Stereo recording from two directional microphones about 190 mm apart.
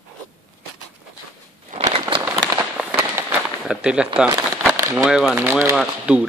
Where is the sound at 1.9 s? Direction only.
25° right (ahead or behind).